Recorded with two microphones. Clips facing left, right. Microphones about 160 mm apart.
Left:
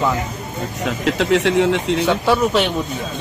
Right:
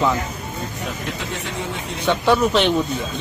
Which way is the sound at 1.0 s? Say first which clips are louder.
Left 12 dB; 90° left.